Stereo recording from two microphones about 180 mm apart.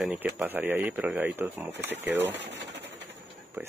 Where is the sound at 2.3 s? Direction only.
75° right (ahead or behind).